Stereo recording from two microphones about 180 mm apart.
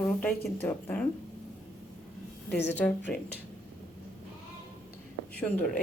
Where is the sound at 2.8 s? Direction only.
10° left (ahead or behind).